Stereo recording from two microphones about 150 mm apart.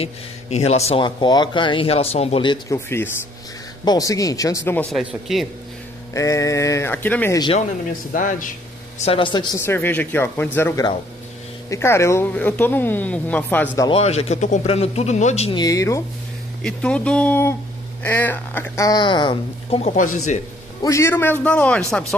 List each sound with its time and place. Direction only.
0.0 s speech: 45° left (ahead or behind)
2.7 s speech: 15° left (ahead or behind)
4.9 s a man's voice: centre (ahead or behind)
6.1 s speech: 20° left (ahead or behind)
8.1 s speech: 60° left (ahead or behind)
8.9 s speech: 40° left (ahead or behind)
9.7 s speech: 15° left (ahead or behind)
11.7 s speech: 20° left (ahead or behind)
13.8 s speech: 40° left (ahead or behind)
15.5 s speech: 25° left (ahead or behind)
16.6 s speech: 5° left (ahead or behind); by 19.8 s 30° left (ahead or behind)
19.8 s speech: 55° left (ahead or behind)
20.8 s speech: 20° left (ahead or behind)